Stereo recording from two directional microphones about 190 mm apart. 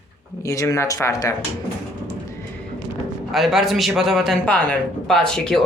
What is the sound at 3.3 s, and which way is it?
A man's voice, centre (ahead or behind).